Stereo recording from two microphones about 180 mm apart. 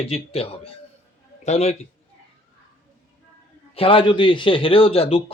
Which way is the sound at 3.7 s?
30° left (ahead or behind).